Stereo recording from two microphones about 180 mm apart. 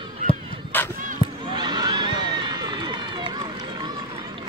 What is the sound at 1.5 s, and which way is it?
Run, 25° right (ahead or behind).